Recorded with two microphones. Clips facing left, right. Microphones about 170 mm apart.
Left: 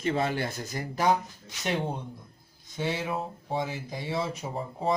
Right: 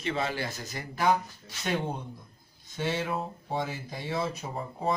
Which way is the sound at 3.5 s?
15° left (ahead or behind).